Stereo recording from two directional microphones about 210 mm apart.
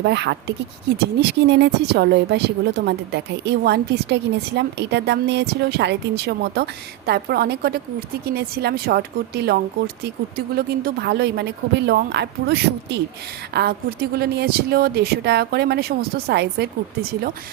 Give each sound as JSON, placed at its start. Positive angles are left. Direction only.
{"t": 0.0, "sound": "speech", "side_deg": -55}